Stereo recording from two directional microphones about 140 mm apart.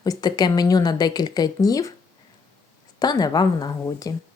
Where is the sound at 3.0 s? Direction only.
30° left (ahead or behind).